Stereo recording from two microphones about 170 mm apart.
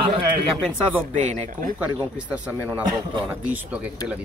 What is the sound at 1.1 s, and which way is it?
Speech, 45° right (ahead or behind).